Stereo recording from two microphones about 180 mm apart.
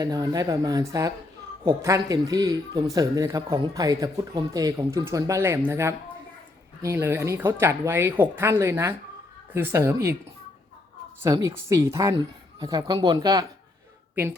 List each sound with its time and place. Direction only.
0.0 s speech: 20° right (ahead or behind)
11.4 s speech: 15° right (ahead or behind)